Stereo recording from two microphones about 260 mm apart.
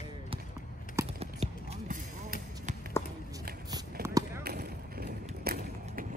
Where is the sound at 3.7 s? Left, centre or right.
Centre.